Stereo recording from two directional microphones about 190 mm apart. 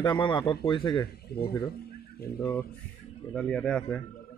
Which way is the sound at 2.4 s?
10° left (ahead or behind).